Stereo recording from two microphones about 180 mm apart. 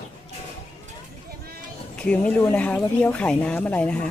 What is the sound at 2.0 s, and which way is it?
Speech, 5° left (ahead or behind).